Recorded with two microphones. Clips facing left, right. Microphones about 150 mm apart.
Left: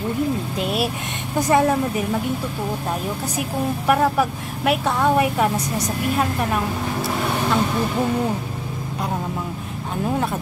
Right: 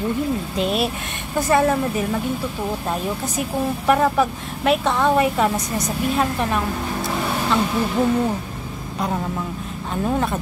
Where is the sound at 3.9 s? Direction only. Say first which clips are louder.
Right 1 dB; 10° left (ahead or behind).